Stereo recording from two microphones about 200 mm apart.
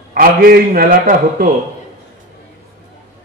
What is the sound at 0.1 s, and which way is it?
A man's voice, 45° right (ahead or behind).